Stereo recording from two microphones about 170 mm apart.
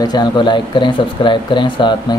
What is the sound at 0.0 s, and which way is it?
Speech, 25° left (ahead or behind).